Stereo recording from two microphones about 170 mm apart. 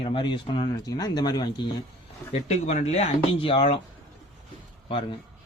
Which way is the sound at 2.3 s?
40° left (ahead or behind).